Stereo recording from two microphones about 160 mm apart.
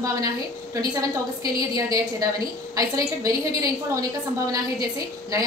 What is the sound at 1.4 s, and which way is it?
A woman's voice, 20° right (ahead or behind).